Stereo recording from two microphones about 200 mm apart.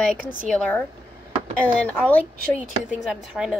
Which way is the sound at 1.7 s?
5° left (ahead or behind).